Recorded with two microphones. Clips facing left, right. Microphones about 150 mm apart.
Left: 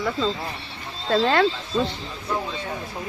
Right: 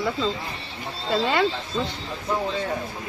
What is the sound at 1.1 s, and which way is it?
Speech, 5° right (ahead or behind).